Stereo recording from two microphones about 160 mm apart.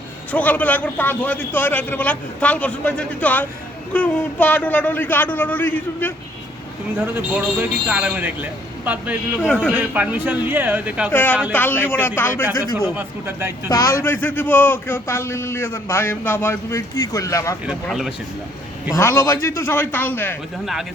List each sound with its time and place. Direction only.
0.3 s a man's voice: 10° left (ahead or behind)
7.0 s speech: 10° right (ahead or behind)
11.1 s a man's voice: 10° left (ahead or behind)
12.8 s speech: 15° right (ahead or behind)
13.7 s a man's voice: 20° left (ahead or behind)
17.7 s speech: centre (ahead or behind)
18.9 s a man's voice: 15° left (ahead or behind)